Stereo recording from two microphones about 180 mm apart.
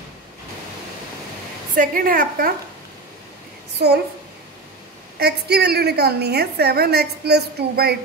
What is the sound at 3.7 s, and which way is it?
Speech, 65° right (ahead or behind).